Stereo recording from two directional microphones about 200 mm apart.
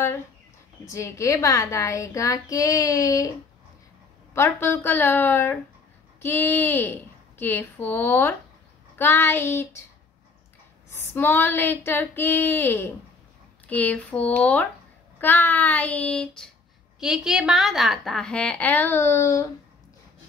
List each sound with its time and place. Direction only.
0.8 s a woman's voice: 15° left (ahead or behind)
4.3 s a woman's voice: 10° left (ahead or behind)
10.9 s a woman's voice: 10° left (ahead or behind)